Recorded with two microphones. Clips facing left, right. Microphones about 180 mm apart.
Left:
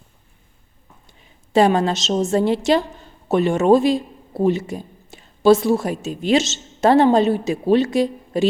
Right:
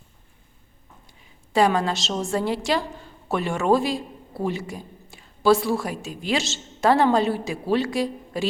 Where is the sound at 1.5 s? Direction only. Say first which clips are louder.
Left 4 dB; 25° left (ahead or behind).